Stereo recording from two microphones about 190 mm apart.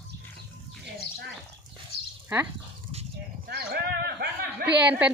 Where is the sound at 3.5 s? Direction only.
60° right (ahead or behind).